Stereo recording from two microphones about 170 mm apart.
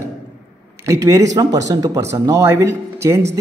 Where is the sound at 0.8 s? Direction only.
20° right (ahead or behind).